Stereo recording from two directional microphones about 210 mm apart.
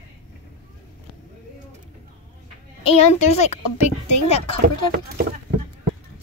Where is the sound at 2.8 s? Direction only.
30° left (ahead or behind).